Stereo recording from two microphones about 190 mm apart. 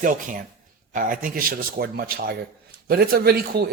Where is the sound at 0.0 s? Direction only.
45° right (ahead or behind).